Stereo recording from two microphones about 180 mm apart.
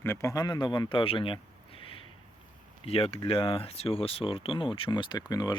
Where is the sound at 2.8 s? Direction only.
35° left (ahead or behind).